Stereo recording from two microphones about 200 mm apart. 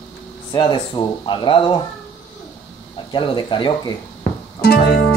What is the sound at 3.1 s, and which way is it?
Speech, 25° left (ahead or behind).